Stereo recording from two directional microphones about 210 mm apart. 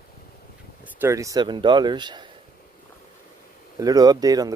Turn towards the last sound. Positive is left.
turn(degrees=-15)  # may be behind; listen again after turning